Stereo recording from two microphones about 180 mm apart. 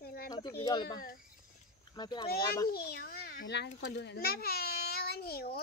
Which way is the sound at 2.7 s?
60° left (ahead or behind).